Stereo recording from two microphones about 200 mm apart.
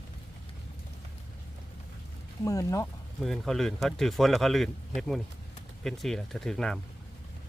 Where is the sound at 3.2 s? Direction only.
Centre (ahead or behind).